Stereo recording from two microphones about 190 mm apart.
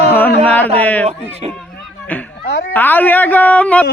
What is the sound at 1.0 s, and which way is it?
Speech, 35° right (ahead or behind).